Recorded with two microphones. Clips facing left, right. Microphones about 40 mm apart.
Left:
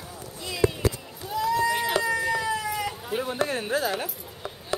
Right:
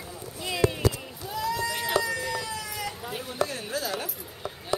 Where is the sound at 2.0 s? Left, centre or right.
Left.